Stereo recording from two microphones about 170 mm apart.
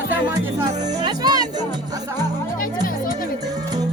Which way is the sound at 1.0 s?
25° right (ahead or behind).